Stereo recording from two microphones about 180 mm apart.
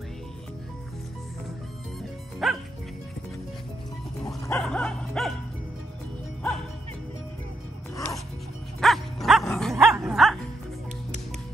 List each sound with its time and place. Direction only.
2.4 s music: centre (ahead or behind)
4.5 s bow-wow: 5° left (ahead or behind)
7.9 s music: 15° left (ahead or behind)
8.8 s music: centre (ahead or behind)